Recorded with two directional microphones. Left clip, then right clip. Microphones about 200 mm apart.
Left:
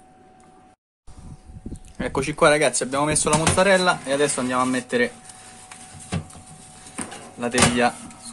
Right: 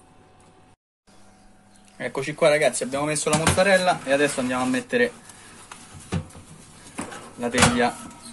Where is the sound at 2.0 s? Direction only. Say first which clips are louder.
Left 3 dB; 30° left (ahead or behind).